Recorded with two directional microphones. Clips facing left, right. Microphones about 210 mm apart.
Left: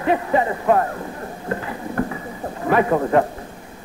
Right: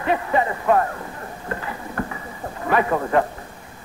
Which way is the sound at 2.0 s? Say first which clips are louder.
Left 5 dB; 10° left (ahead or behind).